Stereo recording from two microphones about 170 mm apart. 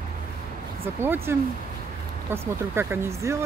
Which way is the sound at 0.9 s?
15° right (ahead or behind).